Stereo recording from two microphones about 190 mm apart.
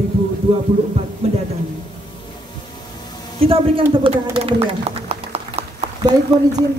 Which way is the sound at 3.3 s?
30° right (ahead or behind).